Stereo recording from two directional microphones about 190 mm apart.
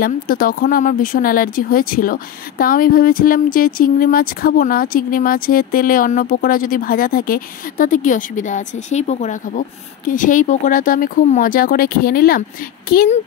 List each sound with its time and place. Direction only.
0.0 s speech: 50° left (ahead or behind)